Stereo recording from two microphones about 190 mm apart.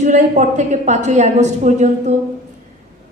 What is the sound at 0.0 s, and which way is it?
A woman's voice, 40° right (ahead or behind).